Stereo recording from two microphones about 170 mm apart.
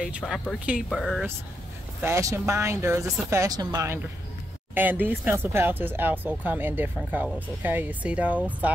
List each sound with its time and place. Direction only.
0.0 s speech: 5° right (ahead or behind)
2.0 s speech: 15° right (ahead or behind)